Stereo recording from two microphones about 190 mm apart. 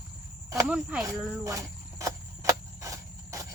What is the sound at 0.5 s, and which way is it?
Speech, 10° right (ahead or behind).